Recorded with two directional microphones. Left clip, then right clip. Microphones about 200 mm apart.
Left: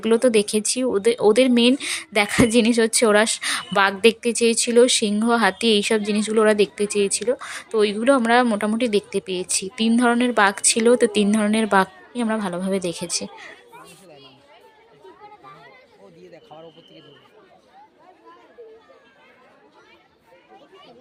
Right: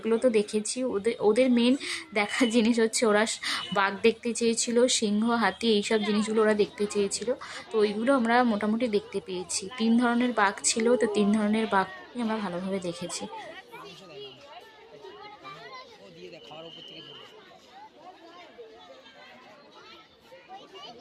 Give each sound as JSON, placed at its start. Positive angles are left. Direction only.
{"t": 0.0, "sound": "speech", "side_deg": 25}